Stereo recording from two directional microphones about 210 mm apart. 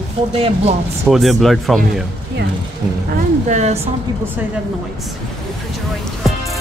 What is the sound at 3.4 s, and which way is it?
Speech, 35° right (ahead or behind).